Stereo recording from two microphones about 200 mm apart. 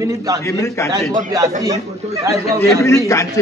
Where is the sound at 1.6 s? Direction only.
20° right (ahead or behind).